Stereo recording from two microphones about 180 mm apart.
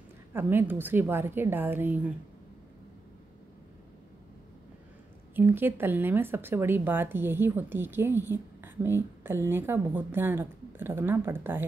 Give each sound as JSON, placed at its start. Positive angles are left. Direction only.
{"t": 0.3, "sound": "speech", "side_deg": -10}
{"t": 5.3, "sound": "speech", "side_deg": -10}